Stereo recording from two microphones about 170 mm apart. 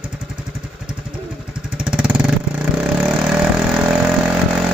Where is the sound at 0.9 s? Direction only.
5° right (ahead or behind).